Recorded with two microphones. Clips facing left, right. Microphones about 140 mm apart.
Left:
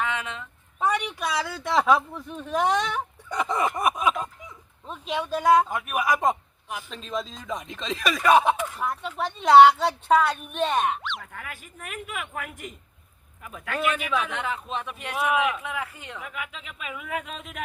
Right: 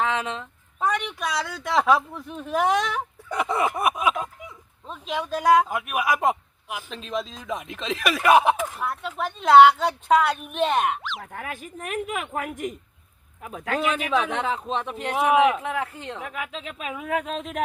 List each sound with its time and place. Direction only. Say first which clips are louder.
0.0 s a sound: right 4 dB; 35° right (ahead or behind)
0.9 s speech: even; 5° left (ahead or behind)
11.2 s a man's voice: right 6 dB; 45° right (ahead or behind)